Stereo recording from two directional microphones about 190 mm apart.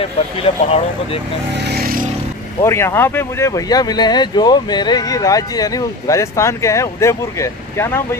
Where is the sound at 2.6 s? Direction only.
15° left (ahead or behind).